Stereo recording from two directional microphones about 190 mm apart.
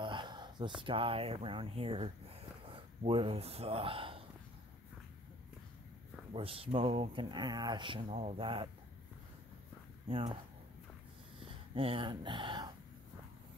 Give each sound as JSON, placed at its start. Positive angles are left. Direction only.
{"t": 0.0, "sound": "speech", "side_deg": -25}
{"t": 6.3, "sound": "speech", "side_deg": -30}
{"t": 10.0, "sound": "speech", "side_deg": -30}
{"t": 11.7, "sound": "speech", "side_deg": -30}